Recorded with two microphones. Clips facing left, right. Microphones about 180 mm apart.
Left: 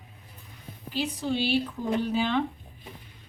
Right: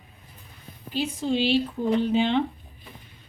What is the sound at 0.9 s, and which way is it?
A woman's voice, 20° right (ahead or behind).